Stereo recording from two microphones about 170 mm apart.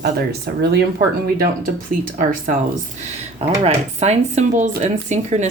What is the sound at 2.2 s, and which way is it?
Speech, 50° right (ahead or behind).